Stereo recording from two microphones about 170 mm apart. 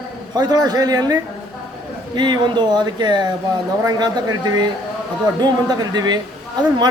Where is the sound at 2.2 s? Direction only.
25° right (ahead or behind).